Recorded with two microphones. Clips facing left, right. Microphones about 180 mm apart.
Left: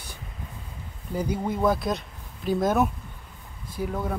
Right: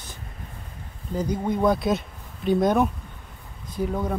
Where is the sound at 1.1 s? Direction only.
10° left (ahead or behind).